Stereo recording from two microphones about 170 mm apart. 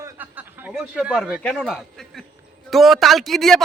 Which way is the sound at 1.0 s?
5° right (ahead or behind).